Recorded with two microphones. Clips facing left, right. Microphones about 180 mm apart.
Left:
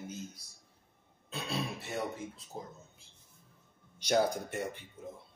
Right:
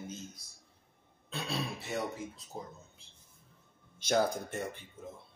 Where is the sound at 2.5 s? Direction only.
Centre (ahead or behind).